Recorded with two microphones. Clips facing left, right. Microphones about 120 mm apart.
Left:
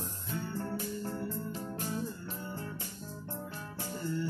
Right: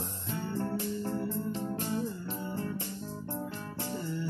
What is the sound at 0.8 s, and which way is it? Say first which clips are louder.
Music: right 4 dB; 75° right (ahead or behind).